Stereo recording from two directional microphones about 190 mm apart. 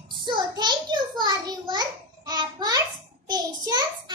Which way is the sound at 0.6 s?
20° right (ahead or behind).